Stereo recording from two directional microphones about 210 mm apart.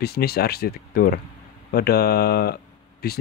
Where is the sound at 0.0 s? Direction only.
50° left (ahead or behind).